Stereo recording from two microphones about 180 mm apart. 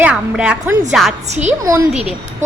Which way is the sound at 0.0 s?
5° right (ahead or behind).